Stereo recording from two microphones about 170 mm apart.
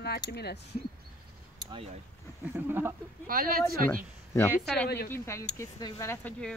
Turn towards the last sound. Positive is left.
turn(degrees=15)  # may be behind; listen again after turning